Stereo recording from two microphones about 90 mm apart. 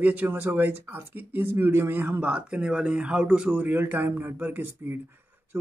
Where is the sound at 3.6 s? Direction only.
20° right (ahead or behind).